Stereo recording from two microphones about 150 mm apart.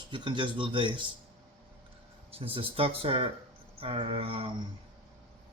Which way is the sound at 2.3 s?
40° right (ahead or behind).